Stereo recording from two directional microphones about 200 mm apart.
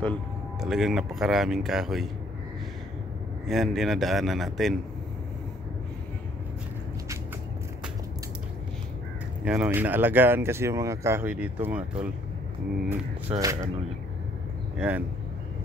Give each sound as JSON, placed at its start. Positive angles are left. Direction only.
{"t": 0.0, "sound": "speech", "side_deg": 0}
{"t": 3.4, "sound": "speech", "side_deg": 0}
{"t": 9.4, "sound": "speech", "side_deg": -5}
{"t": 13.4, "sound": "speech", "side_deg": -15}
{"t": 14.8, "sound": "speech", "side_deg": -10}